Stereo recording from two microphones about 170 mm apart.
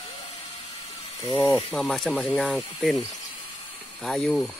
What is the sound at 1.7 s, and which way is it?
Speech, centre (ahead or behind).